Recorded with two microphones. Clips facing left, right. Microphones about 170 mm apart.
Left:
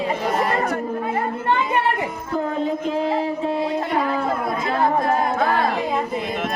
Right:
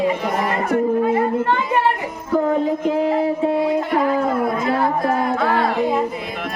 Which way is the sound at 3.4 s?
15° right (ahead or behind).